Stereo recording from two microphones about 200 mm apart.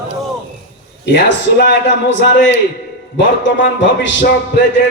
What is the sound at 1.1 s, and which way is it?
A man's voice, 60° left (ahead or behind).